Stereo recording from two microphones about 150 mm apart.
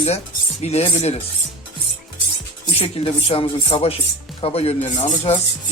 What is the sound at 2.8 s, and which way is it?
Speech, 40° left (ahead or behind).